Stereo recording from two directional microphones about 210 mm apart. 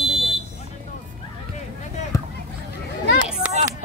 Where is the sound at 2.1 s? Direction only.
15° left (ahead or behind).